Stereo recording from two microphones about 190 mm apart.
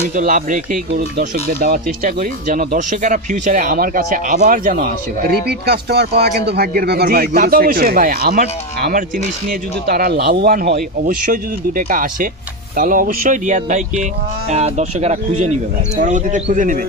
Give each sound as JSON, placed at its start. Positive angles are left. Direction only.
{"t": 0.2, "sound": "speech", "side_deg": -45}
{"t": 0.9, "sound": "speech", "side_deg": -60}
{"t": 1.2, "sound": "speech", "side_deg": -45}
{"t": 5.5, "sound": "speech", "side_deg": -55}